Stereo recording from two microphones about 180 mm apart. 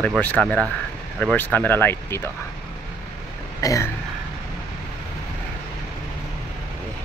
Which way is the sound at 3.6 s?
15° left (ahead or behind).